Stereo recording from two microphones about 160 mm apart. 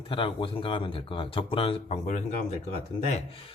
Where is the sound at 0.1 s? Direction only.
30° left (ahead or behind).